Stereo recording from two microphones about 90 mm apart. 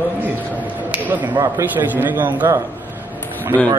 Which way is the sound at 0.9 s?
20° right (ahead or behind).